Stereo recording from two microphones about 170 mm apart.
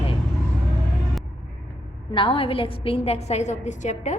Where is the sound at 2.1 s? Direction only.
35° left (ahead or behind).